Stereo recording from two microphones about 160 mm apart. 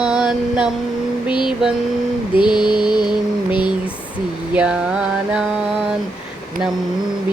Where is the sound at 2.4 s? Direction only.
30° left (ahead or behind).